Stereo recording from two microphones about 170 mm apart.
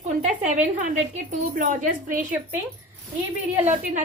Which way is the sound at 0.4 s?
45° right (ahead or behind).